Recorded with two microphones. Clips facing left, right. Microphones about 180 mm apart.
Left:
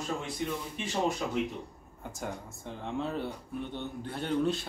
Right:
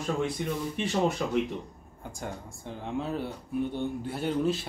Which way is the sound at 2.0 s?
Centre (ahead or behind).